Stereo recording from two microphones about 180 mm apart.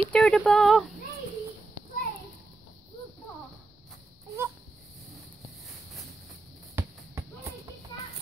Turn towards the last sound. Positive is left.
turn(degrees=-15)  # may be behind; listen again after turning